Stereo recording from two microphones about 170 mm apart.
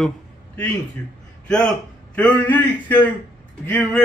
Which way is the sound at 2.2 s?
10° left (ahead or behind).